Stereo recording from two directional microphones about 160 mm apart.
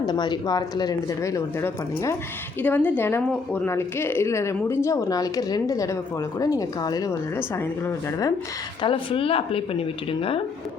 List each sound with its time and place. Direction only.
0.0 s speech: 30° left (ahead or behind)
8.8 s speech: 35° left (ahead or behind)